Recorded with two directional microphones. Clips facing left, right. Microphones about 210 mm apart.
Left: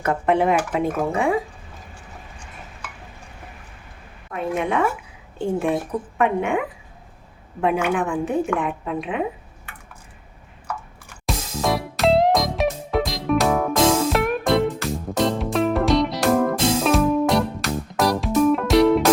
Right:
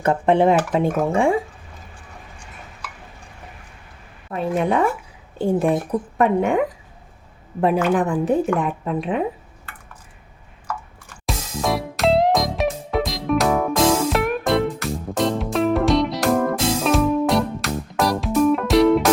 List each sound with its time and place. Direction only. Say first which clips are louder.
0.0 s speech: right 3 dB; 30° right (ahead or behind)
4.3 s a sound: right 3 dB; 35° right (ahead or behind)
5.4 s a woman's voice: right 3 dB; 35° right (ahead or behind)
7.9 s a woman's voice: right 3 dB; 40° right (ahead or behind)
11.3 s music: even; centre (ahead or behind)